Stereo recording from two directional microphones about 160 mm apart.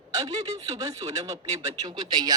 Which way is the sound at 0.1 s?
20° right (ahead or behind).